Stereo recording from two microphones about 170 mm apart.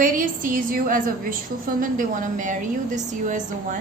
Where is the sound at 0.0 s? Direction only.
55° right (ahead or behind).